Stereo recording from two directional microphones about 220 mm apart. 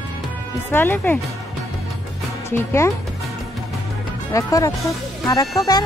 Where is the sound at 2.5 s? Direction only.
10° left (ahead or behind).